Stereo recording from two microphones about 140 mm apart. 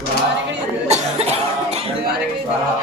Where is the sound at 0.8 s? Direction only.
50° right (ahead or behind).